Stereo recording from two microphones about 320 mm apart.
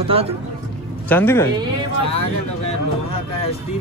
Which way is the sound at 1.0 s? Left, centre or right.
Centre.